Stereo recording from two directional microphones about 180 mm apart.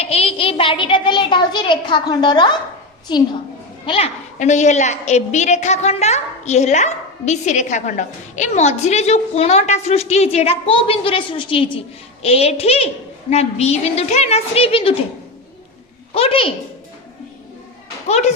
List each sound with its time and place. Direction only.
0.0 s a child's voice: 35° left (ahead or behind)
3.8 s a woman's voice: 35° left (ahead or behind)
16.1 s a woman's voice: 30° left (ahead or behind)